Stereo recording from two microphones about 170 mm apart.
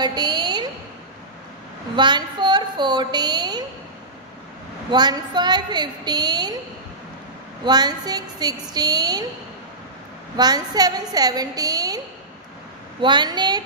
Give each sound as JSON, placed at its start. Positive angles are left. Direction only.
{"t": 0.0, "sound": "a sound", "side_deg": -25}
{"t": 2.0, "sound": "a woman's voice", "side_deg": -25}
{"t": 4.9, "sound": "a woman's voice", "side_deg": -25}
{"t": 7.6, "sound": "a woman's voice", "side_deg": -25}
{"t": 10.3, "sound": "a woman's voice", "side_deg": -25}
{"t": 13.0, "sound": "a woman's voice", "side_deg": -25}